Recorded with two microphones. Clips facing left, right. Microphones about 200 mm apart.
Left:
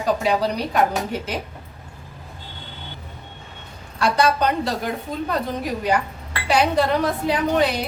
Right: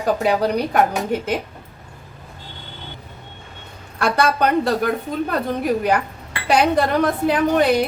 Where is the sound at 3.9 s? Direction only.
55° right (ahead or behind).